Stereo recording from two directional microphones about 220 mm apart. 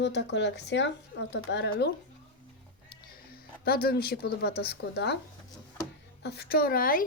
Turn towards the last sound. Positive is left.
turn(degrees=40)  # may be behind; listen again after turning